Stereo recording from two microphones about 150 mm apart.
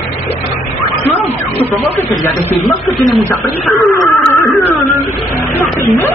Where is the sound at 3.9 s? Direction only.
20° left (ahead or behind).